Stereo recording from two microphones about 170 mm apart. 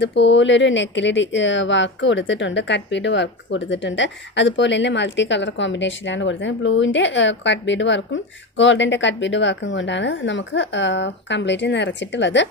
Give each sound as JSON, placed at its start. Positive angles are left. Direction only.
{"t": 0.0, "sound": "speech", "side_deg": 90}